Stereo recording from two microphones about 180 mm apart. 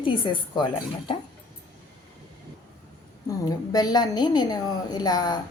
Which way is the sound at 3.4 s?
20° left (ahead or behind).